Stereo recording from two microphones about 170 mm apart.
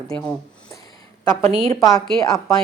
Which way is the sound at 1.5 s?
35° right (ahead or behind).